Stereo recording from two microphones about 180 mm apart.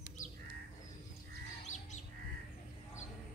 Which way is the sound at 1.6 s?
40° left (ahead or behind).